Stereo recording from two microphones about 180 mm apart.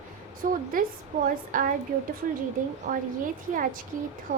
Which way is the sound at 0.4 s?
45° right (ahead or behind).